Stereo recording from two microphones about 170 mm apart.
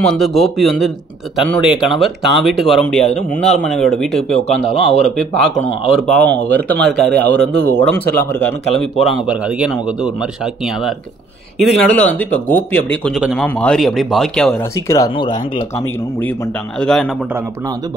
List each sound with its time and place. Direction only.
0.0 s a man's voice: centre (ahead or behind)
11.5 s a man's voice: 5° left (ahead or behind)
14.9 s speech: 25° left (ahead or behind)
16.8 s a man's voice: centre (ahead or behind)